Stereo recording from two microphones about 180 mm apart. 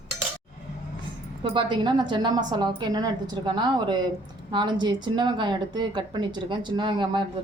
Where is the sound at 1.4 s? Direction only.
30° right (ahead or behind).